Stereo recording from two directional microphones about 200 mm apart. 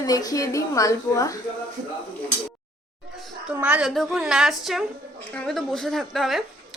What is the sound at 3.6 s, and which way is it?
A woman's voice, 5° right (ahead or behind).